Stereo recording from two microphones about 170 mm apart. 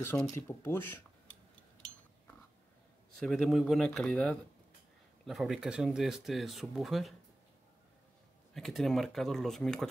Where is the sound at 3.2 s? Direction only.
Centre (ahead or behind).